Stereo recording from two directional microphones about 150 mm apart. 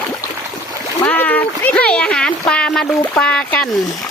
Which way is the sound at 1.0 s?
10° left (ahead or behind).